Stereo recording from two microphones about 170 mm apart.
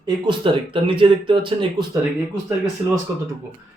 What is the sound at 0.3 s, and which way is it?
Speech, 30° right (ahead or behind).